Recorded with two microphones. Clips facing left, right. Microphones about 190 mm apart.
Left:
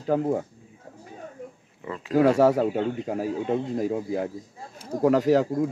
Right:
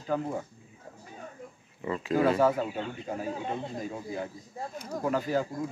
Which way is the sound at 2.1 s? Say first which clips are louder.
Left 6 dB; 75° left (ahead or behind).